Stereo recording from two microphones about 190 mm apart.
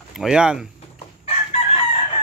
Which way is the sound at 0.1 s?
5° right (ahead or behind).